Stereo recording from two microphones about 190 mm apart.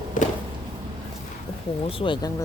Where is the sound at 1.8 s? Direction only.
30° left (ahead or behind).